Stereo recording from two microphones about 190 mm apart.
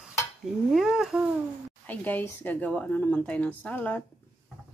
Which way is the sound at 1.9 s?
10° left (ahead or behind).